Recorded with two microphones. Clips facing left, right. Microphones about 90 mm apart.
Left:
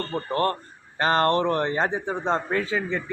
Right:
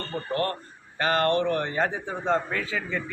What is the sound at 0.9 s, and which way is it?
A man's voice, 30° left (ahead or behind).